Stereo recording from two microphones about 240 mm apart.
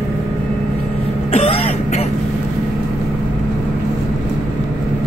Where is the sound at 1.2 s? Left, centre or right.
Left.